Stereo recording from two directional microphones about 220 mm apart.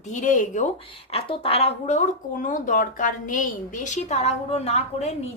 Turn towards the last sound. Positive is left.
turn(degrees=30)  # may be behind; listen again after turning